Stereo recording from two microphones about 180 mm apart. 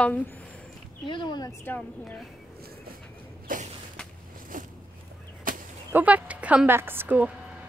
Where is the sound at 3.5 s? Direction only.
50° right (ahead or behind).